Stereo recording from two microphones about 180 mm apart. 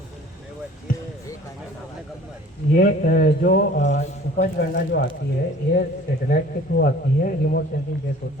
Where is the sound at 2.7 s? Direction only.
55° left (ahead or behind).